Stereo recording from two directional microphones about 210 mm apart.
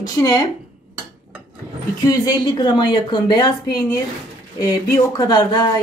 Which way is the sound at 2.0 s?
20° left (ahead or behind).